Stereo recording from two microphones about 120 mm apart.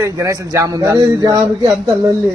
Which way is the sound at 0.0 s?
25° right (ahead or behind).